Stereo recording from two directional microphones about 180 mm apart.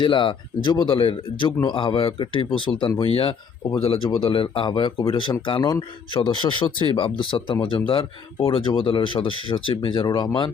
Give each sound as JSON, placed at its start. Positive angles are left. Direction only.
{"t": 0.0, "sound": "speech", "side_deg": 25}